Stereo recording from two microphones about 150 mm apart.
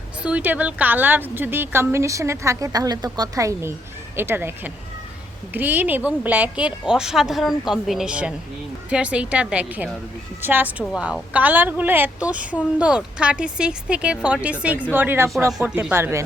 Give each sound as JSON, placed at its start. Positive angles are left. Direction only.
{"t": 0.2, "sound": "a woman's voice", "side_deg": -10}